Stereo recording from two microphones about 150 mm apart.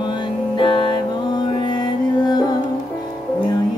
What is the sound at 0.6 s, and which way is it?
Music, 35° left (ahead or behind).